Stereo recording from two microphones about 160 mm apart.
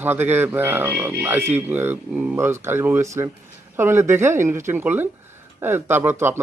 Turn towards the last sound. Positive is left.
turn(degrees=-15)  # may be behind; listen again after turning